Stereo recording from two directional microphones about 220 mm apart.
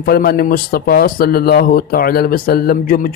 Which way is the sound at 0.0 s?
45° left (ahead or behind).